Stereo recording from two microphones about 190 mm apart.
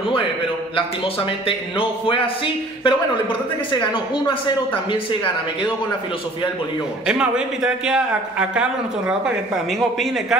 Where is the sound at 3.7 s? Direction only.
25° left (ahead or behind).